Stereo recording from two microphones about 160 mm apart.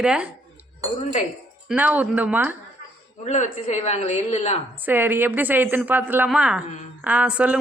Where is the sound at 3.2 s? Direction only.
50° left (ahead or behind).